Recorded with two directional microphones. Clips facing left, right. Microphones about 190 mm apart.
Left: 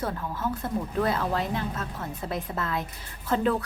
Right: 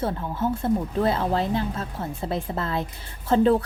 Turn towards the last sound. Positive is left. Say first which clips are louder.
# right 6 dB
turn(degrees=-30)  # may be behind; listen again after turning